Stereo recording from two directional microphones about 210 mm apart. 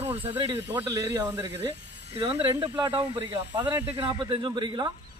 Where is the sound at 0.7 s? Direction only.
10° right (ahead or behind).